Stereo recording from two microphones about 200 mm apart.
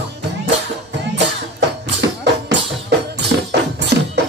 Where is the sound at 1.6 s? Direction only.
60° right (ahead or behind).